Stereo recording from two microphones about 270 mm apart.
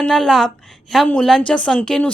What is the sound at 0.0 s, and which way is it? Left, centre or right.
A woman's voice, centre.